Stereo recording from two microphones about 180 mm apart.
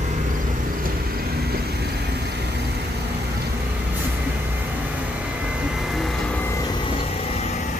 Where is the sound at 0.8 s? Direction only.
55° right (ahead or behind).